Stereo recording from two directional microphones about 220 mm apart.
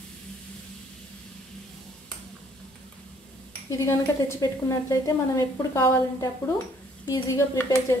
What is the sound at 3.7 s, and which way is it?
A woman's voice, 15° left (ahead or behind).